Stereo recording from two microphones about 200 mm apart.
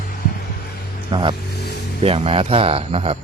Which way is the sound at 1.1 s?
25° right (ahead or behind).